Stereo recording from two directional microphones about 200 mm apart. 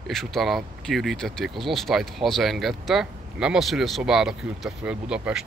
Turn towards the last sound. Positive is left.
turn(degrees=-5)  # may be behind; listen again after turning